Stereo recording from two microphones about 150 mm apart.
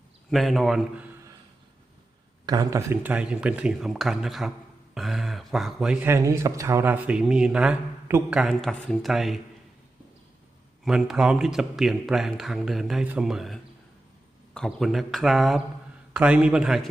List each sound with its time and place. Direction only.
0.3 s a man's voice: centre (ahead or behind)
2.5 s speech: 25° right (ahead or behind); by 6.1 s 5° right (ahead or behind)
6.1 s speech: 20° right (ahead or behind)
8.0 s speech: 15° right (ahead or behind)
8.4 s a man's voice: centre (ahead or behind)
10.8 s a man's voice: 5° right (ahead or behind)